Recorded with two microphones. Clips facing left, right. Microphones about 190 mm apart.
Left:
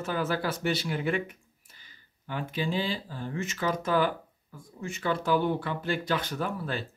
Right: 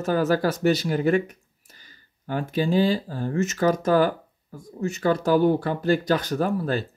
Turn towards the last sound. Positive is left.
turn(degrees=-40)  # may be behind; listen again after turning